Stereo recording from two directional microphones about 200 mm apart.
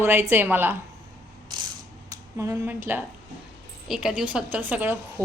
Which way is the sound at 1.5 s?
20° right (ahead or behind).